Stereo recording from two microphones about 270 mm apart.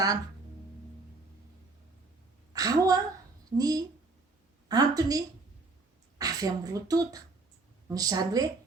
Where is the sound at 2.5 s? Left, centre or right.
Centre.